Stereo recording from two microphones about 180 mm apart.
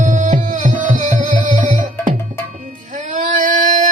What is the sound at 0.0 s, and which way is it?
Music, 45° right (ahead or behind).